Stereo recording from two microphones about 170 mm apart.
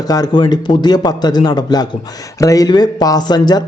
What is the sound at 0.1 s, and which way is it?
A man's voice, 25° left (ahead or behind).